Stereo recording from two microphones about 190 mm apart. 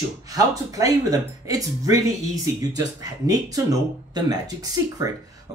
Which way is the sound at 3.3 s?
20° right (ahead or behind).